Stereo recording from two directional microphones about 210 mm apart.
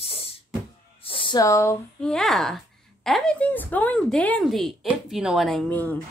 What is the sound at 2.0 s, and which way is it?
Speech, centre (ahead or behind).